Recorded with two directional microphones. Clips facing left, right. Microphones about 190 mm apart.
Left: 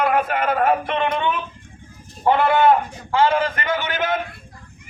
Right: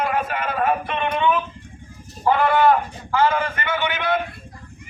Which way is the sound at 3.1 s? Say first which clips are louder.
Left 2 dB; 30° left (ahead or behind).